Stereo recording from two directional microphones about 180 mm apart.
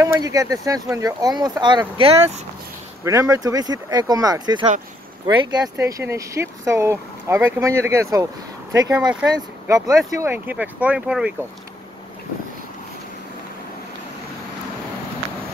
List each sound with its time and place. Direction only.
0.0 s speech: 20° right (ahead or behind)
3.0 s speech: 15° right (ahead or behind)